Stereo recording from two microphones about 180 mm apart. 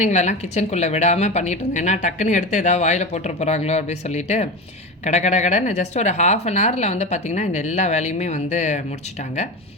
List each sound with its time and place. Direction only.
0.0 s a woman's voice: 40° left (ahead or behind)